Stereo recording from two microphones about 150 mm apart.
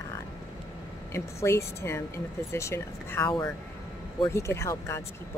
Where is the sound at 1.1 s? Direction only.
20° left (ahead or behind).